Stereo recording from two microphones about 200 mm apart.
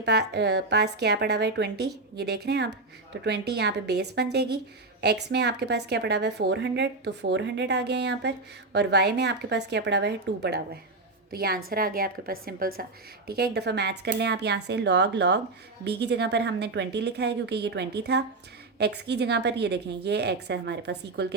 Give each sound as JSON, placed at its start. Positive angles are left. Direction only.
{"t": 0.0, "sound": "a woman's voice", "side_deg": -55}